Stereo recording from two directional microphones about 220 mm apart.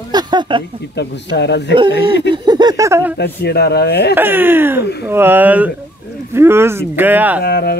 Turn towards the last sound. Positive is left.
turn(degrees=45)  # may be behind; listen again after turning